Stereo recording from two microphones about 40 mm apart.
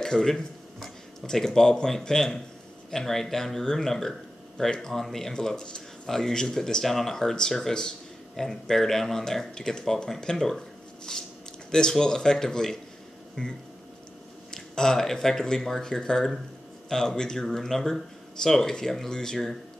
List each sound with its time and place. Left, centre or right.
0.0 s speech: centre